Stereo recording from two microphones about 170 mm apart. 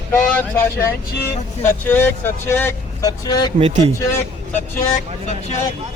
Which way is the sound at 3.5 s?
35° right (ahead or behind).